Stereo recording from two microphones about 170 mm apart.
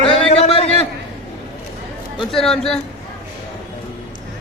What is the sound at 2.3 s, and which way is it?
Speech, 5° left (ahead or behind).